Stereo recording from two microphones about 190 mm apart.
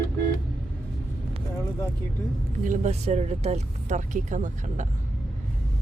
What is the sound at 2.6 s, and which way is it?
Speech, 40° right (ahead or behind).